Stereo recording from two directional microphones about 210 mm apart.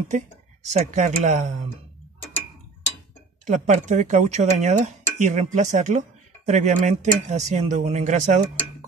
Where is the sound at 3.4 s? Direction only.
35° right (ahead or behind).